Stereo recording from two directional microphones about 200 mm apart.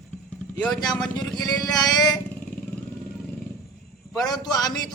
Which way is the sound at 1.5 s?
20° left (ahead or behind).